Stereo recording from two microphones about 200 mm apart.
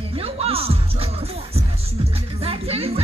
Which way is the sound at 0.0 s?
30° right (ahead or behind).